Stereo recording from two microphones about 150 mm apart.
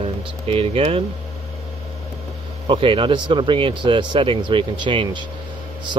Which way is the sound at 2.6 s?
35° right (ahead or behind).